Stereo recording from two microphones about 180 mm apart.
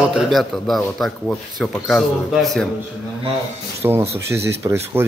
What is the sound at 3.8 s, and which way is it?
Speech, 15° right (ahead or behind).